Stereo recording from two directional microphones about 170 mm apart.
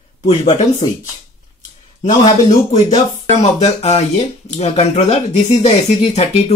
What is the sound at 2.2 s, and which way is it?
Speech, 40° left (ahead or behind).